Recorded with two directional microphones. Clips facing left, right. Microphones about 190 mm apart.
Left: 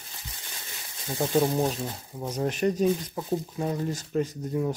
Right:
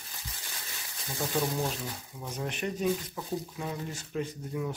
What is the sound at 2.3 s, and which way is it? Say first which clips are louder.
Speech: left 8 dB; 40° left (ahead or behind).